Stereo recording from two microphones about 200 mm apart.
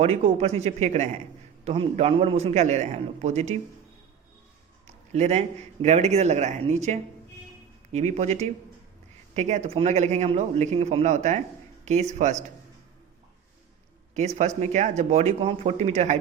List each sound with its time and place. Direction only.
0.0 s a man's voice: 30° right (ahead or behind)
4.9 s a man's voice: 35° right (ahead or behind)
14.1 s a man's voice: 35° right (ahead or behind)